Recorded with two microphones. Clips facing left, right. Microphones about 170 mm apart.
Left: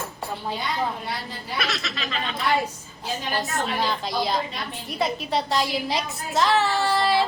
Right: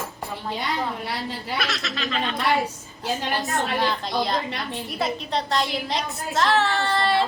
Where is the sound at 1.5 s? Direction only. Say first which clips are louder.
Left 1 dB; centre (ahead or behind).